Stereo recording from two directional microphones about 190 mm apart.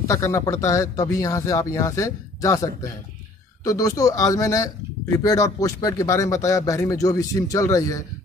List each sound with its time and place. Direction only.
0.1 s speech: 15° left (ahead or behind)